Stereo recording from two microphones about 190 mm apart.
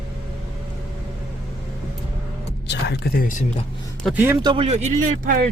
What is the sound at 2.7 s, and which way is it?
Speech, 65° left (ahead or behind).